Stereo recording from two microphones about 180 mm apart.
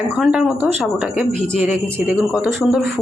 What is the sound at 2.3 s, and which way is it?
Speech, centre (ahead or behind).